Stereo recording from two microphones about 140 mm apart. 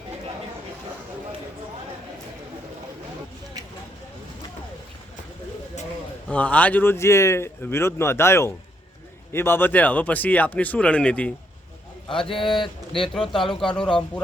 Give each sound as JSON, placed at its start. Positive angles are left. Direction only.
{"t": 6.2, "sound": "speech", "side_deg": 10}
{"t": 12.5, "sound": "a man's voice", "side_deg": 35}
{"t": 13.0, "sound": "a man's voice", "side_deg": 5}